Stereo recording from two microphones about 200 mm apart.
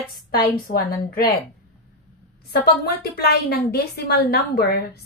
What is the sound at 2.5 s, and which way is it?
A woman's voice, 55° left (ahead or behind).